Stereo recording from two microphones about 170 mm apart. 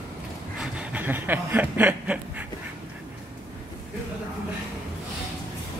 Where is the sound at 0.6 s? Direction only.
5° right (ahead or behind).